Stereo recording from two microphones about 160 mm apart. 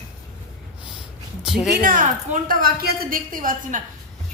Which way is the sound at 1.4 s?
Centre (ahead or behind).